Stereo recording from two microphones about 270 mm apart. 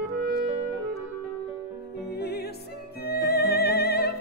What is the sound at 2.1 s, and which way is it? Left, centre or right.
Music, left.